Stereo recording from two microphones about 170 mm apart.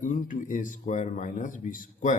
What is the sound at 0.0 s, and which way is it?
Speech, 50° left (ahead or behind).